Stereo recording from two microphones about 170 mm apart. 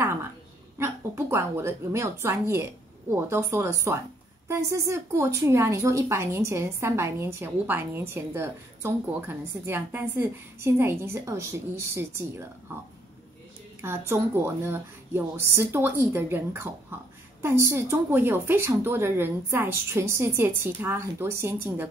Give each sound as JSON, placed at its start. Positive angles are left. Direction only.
{"t": 0.0, "sound": "a sound", "side_deg": -15}
{"t": 0.7, "sound": "a woman's voice", "side_deg": -15}
{"t": 13.7, "sound": "a woman's voice", "side_deg": -15}